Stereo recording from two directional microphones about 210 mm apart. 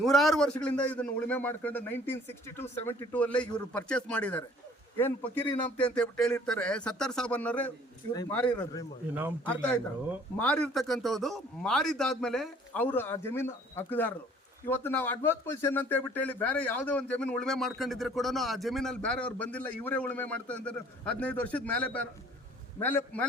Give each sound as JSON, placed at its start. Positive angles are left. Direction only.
{"t": 0.0, "sound": "a man's voice", "side_deg": 0}
{"t": 8.1, "sound": "speech", "side_deg": 20}
{"t": 8.4, "sound": "speech", "side_deg": 5}
{"t": 9.1, "sound": "a man's voice", "side_deg": -10}
{"t": 10.3, "sound": "a man's voice", "side_deg": 5}